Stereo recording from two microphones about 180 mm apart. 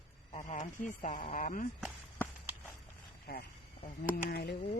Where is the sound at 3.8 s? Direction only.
55° left (ahead or behind).